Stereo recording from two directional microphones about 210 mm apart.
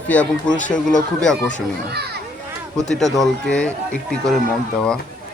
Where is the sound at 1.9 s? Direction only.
50° right (ahead or behind).